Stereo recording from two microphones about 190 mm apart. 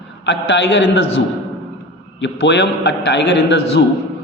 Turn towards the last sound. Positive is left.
turn(degrees=65)  # may be behind; listen again after turning